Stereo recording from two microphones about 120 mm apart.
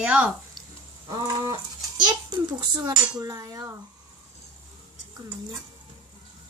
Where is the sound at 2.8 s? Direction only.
35° right (ahead or behind).